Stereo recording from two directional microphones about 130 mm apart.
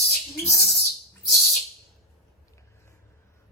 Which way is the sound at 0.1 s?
Centre (ahead or behind).